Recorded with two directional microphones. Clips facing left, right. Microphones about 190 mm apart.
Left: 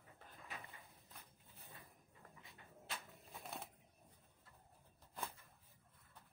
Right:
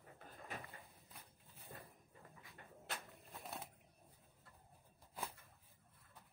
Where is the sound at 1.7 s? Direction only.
60° right (ahead or behind).